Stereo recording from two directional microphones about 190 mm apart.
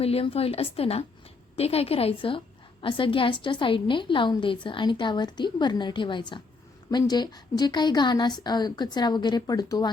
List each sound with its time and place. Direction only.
0.0 s a woman's voice: 30° left (ahead or behind)